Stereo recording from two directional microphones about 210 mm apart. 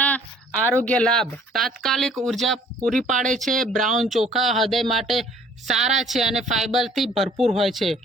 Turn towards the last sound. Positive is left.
turn(degrees=0)  # may be behind; listen again after turning